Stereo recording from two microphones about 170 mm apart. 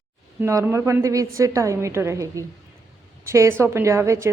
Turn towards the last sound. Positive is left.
turn(degrees=-15)  # may be behind; listen again after turning